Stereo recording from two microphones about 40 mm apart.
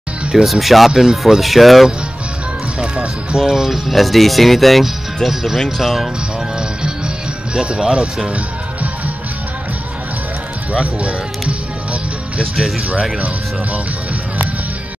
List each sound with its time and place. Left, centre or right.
0.3 s speech: centre
2.8 s speech: right
3.3 s speech: centre
3.9 s speech: centre
7.6 s speech: right
10.7 s music: right